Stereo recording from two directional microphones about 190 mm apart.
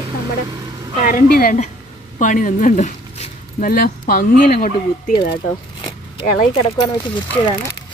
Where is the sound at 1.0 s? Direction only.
45° left (ahead or behind).